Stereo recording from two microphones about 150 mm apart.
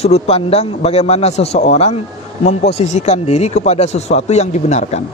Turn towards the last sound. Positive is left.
turn(degrees=50)  # may be behind; listen again after turning